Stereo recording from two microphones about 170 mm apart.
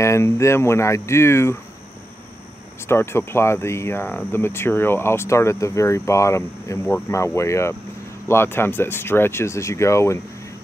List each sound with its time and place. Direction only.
0.0 s speech: 15° left (ahead or behind)
2.9 s speech: 15° left (ahead or behind)